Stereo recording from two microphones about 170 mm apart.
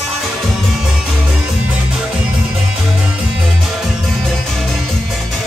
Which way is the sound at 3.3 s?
Centre (ahead or behind).